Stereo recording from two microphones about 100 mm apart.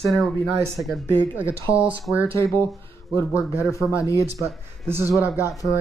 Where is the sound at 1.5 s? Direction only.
30° left (ahead or behind).